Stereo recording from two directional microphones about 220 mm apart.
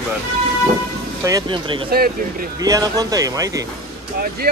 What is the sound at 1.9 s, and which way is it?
Speech, 45° right (ahead or behind).